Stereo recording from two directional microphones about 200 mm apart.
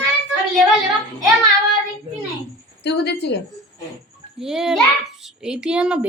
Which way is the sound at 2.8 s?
55° left (ahead or behind).